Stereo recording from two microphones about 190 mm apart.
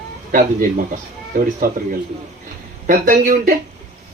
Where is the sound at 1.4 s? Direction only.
45° right (ahead or behind).